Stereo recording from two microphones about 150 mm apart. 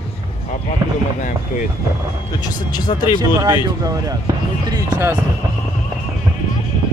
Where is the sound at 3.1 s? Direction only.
25° right (ahead or behind).